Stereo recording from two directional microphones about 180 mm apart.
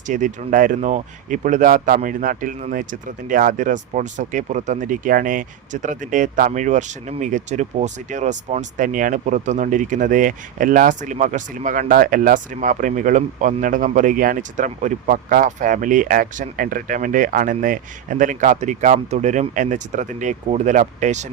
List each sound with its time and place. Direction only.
0.1 s speech: 45° right (ahead or behind)